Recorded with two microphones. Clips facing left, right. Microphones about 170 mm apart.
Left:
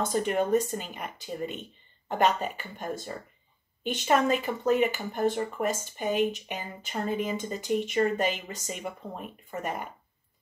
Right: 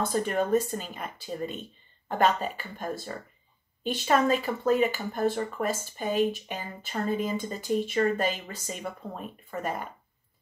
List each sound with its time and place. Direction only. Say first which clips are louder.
0.1 s speech: left 1 dB; 15° left (ahead or behind)